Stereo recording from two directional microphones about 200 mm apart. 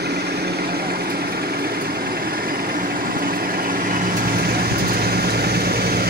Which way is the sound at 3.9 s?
45° right (ahead or behind).